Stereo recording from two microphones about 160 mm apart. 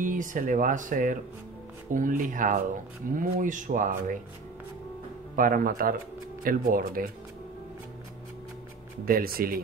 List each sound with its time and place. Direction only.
0.0 s speech: 55° right (ahead or behind)
5.3 s speech: 60° right (ahead or behind)
9.0 s speech: 65° right (ahead or behind)